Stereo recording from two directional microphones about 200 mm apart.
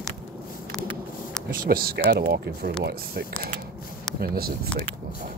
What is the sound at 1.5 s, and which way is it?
Speech, 45° right (ahead or behind).